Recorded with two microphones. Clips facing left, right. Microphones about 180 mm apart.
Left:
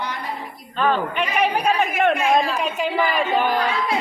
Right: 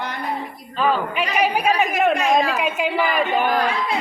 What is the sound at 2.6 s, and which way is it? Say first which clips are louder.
Speech: right 1 dB; 5° right (ahead or behind).